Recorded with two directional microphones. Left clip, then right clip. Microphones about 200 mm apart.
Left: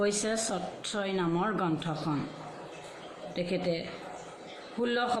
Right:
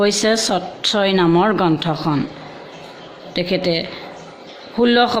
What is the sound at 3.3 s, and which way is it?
Speech, 50° right (ahead or behind).